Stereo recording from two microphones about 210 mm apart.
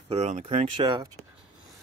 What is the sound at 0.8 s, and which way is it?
Speech, 15° right (ahead or behind).